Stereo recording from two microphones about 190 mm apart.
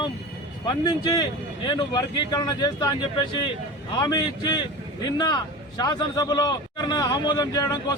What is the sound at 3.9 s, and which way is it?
A man's voice, 20° left (ahead or behind).